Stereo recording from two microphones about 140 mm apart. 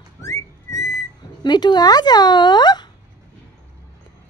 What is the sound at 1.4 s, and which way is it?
Speech, 30° left (ahead or behind).